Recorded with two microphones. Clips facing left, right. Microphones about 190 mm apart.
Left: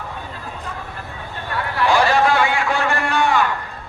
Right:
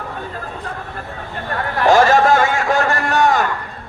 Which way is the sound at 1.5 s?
45° right (ahead or behind).